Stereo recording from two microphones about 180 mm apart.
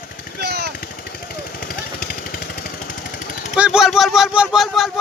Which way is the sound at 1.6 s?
55° left (ahead or behind).